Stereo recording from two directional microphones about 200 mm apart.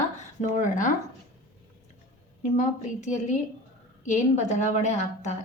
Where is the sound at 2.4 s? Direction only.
35° left (ahead or behind).